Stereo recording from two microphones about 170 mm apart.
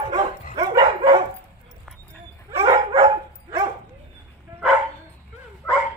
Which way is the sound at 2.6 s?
30° right (ahead or behind).